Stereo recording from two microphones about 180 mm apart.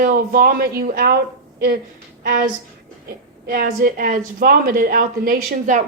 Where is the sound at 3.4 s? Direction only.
55° right (ahead or behind).